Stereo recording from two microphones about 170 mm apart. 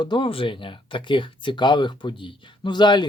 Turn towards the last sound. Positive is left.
turn(degrees=25)  # may be behind; listen again after turning